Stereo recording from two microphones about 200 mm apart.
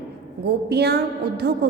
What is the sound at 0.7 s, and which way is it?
Speech, 55° right (ahead or behind).